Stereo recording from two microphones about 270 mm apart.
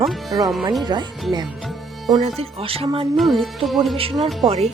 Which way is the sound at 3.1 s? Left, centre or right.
Centre.